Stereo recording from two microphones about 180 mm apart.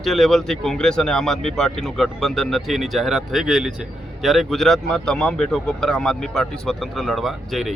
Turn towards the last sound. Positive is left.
turn(degrees=0)  # may be behind; listen again after turning